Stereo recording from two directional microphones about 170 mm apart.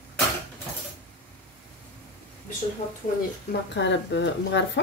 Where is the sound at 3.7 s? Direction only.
90° left.